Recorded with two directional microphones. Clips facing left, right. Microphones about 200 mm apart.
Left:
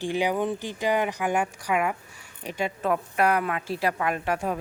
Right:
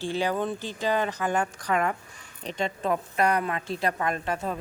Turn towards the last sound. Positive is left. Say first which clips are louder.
# left 2 dB
turn(degrees=10)  # may be behind; listen again after turning